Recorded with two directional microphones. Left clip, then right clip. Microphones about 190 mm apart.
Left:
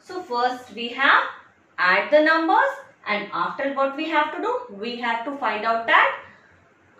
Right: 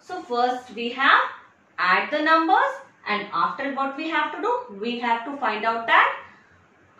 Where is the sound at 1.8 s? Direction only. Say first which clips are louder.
Left 4 dB; 15° left (ahead or behind).